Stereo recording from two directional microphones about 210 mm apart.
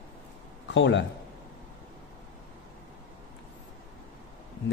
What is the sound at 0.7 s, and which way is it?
Speech, 60° left (ahead or behind).